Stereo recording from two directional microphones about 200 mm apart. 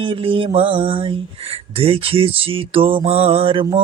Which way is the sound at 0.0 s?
25° right (ahead or behind).